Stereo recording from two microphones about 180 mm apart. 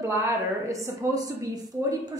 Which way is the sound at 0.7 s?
20° right (ahead or behind).